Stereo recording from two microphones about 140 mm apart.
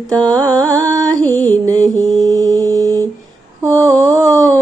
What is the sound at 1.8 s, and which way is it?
Mantra, 25° right (ahead or behind).